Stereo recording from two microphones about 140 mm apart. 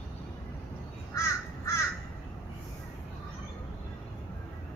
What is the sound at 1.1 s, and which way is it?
Crow, 20° left (ahead or behind).